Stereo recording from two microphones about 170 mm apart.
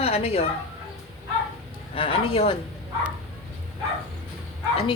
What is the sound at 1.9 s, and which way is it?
Speech, 35° left (ahead or behind).